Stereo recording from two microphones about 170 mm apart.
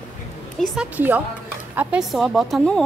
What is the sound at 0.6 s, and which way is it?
A woman's voice, 5° right (ahead or behind).